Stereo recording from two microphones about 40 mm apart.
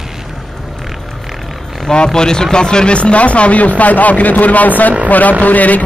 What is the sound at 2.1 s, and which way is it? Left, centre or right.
A man's voice, centre.